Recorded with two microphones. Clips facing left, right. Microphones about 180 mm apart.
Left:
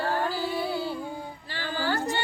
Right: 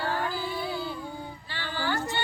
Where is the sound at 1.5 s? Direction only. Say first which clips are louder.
Left 2 dB; 40° left (ahead or behind).